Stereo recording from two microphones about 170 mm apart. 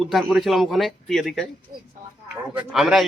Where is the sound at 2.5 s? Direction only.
5° right (ahead or behind).